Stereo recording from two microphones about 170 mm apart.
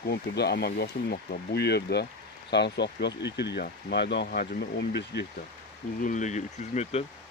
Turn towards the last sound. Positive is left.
turn(degrees=45)  # may be behind; listen again after turning